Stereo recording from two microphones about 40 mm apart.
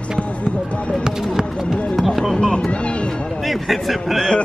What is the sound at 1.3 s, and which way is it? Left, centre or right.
Speech, centre.